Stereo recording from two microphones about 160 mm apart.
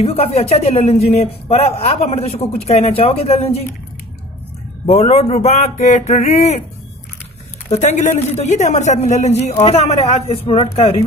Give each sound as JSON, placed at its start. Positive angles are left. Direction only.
{"t": 0.0, "sound": "a man's voice", "side_deg": 35}
{"t": 4.8, "sound": "a man's voice", "side_deg": 40}
{"t": 7.7, "sound": "a man's voice", "side_deg": 45}